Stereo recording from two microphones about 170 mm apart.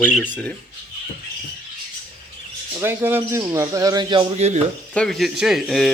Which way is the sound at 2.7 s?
15° right (ahead or behind).